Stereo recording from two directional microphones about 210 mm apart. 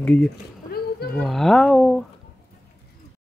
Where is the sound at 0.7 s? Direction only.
45° left (ahead or behind).